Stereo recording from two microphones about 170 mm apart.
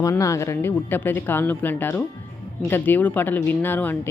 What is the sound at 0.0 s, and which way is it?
Speech, 20° left (ahead or behind).